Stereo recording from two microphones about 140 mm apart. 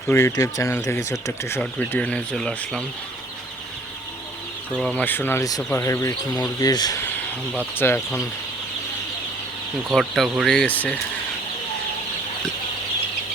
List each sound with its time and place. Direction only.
0.1 s speech: 20° left (ahead or behind)
4.8 s speech: 10° left (ahead or behind); by 7.0 s 30° left (ahead or behind)
7.8 s speech: 20° left (ahead or behind)
9.9 s speech: centre (ahead or behind)